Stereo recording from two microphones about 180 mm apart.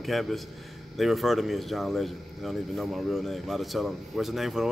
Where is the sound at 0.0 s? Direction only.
Centre (ahead or behind).